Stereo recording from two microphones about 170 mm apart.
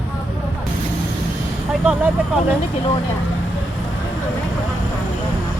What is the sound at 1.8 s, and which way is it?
Speech, 5° right (ahead or behind).